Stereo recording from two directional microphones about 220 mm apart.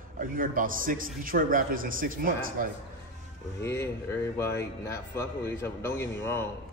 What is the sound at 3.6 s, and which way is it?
Speech, 10° left (ahead or behind).